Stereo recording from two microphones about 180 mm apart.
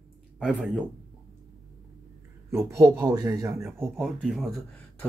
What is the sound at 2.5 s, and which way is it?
A man's voice, 15° right (ahead or behind).